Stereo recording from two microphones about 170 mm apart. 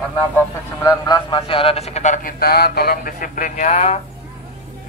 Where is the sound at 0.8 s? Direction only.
25° left (ahead or behind); by 4.0 s 45° left (ahead or behind).